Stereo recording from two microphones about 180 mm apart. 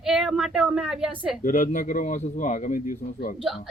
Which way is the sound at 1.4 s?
45° left (ahead or behind).